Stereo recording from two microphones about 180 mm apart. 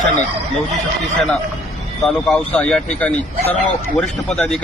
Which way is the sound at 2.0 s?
5° left (ahead or behind).